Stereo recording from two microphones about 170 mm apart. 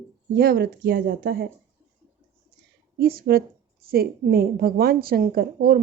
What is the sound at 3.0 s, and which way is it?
Speech, 65° right (ahead or behind).